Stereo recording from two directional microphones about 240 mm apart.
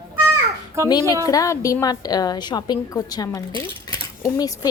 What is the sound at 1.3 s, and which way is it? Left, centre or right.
Speech, centre.